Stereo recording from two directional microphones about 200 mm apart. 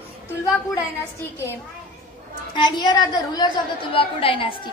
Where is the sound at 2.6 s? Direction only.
20° left (ahead or behind).